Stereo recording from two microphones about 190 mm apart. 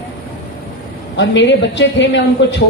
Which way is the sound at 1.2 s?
70° left (ahead or behind).